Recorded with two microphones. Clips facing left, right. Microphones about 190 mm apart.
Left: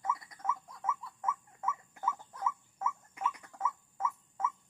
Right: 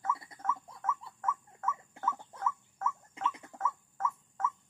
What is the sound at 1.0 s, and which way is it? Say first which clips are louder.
Dog: left 1 dB; 30° right (ahead or behind).